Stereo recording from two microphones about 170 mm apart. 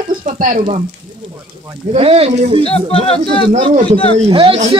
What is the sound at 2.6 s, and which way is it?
Speech, 35° left (ahead or behind).